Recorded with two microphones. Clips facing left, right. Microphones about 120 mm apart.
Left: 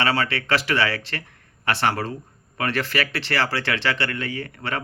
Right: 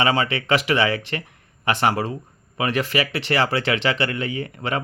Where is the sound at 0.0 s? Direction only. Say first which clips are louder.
Right 2 dB; 15° right (ahead or behind).